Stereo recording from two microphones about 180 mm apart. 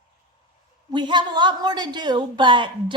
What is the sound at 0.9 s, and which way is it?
A woman's voice, 25° right (ahead or behind).